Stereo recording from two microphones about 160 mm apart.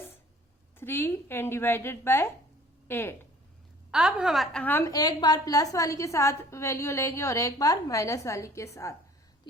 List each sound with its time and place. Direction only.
0.8 s a woman's voice: 15° left (ahead or behind)
3.9 s a woman's voice: 5° right (ahead or behind)
4.6 s a woman's voice: 10° left (ahead or behind)
4.9 s a woman's voice: 25° left (ahead or behind)